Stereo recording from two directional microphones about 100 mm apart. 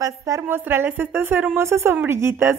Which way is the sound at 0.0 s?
35° right (ahead or behind).